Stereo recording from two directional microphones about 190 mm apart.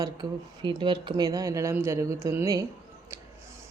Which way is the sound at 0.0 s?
20° right (ahead or behind).